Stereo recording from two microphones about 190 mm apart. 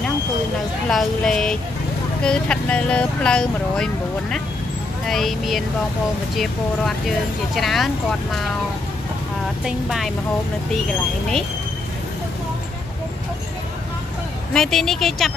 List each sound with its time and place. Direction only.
0.8 s speech: 5° left (ahead or behind)
9.7 s speech: centre (ahead or behind)
14.5 s speech: 5° left (ahead or behind)